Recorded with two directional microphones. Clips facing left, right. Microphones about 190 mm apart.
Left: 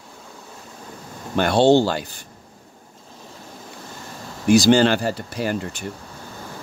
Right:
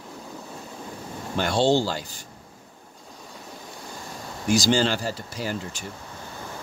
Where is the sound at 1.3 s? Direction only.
60° left (ahead or behind).